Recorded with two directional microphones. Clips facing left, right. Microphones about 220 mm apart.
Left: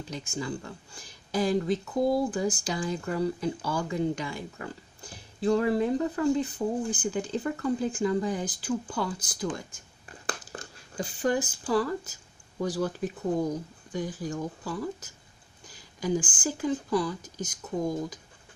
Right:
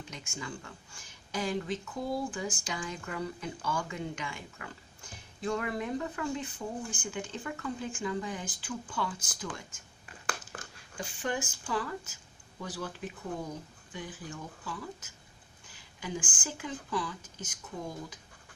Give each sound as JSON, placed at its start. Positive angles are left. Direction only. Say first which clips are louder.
{"t": 0.0, "sound": "speech", "louder": "left 8 dB", "side_deg": 35}
{"t": 9.5, "sound": "a sound", "louder": "left 8 dB", "side_deg": 35}
{"t": 12.5, "sound": "speech", "louder": "left 10 dB", "side_deg": 40}